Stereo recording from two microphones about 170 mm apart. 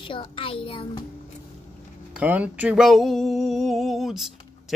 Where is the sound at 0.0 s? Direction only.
30° left (ahead or behind).